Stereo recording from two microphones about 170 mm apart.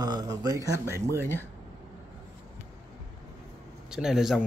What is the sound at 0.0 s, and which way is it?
Speech, 20° right (ahead or behind).